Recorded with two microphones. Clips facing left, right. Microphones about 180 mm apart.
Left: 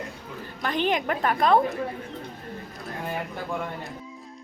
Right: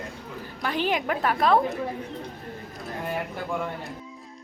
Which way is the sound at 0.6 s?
5° right (ahead or behind).